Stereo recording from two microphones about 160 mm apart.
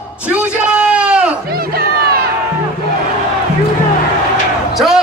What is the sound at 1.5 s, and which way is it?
Crowd, 70° right (ahead or behind).